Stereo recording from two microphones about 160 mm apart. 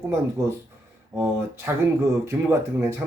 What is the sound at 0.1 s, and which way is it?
Speech, 15° right (ahead or behind).